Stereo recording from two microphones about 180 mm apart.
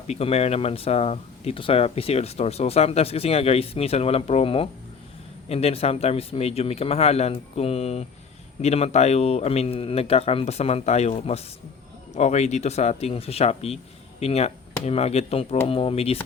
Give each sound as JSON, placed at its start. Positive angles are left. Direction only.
{"t": 0.1, "sound": "speech", "side_deg": 35}